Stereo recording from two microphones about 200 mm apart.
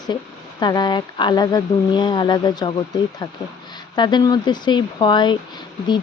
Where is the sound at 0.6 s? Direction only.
20° left (ahead or behind).